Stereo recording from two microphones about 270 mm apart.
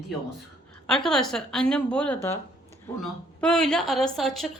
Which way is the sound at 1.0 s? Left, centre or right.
Centre.